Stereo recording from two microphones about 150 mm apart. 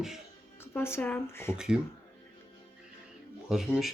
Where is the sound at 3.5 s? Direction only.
Centre (ahead or behind).